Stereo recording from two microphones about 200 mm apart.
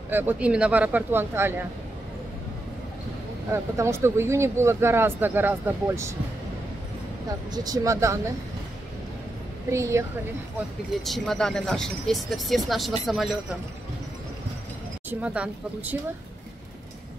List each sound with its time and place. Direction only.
0.1 s speech: 10° right (ahead or behind)
3.5 s speech: 15° right (ahead or behind)
7.5 s speech: 20° right (ahead or behind)
9.7 s speech: 15° right (ahead or behind)
11.0 s speech: centre (ahead or behind)
15.0 s speech: 5° right (ahead or behind)